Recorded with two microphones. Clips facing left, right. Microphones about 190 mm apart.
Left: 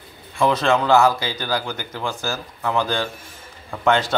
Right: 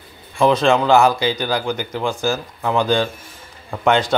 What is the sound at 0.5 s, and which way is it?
Speech, 15° right (ahead or behind).